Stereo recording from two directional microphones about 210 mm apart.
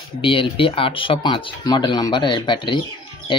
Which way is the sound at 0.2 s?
25° left (ahead or behind).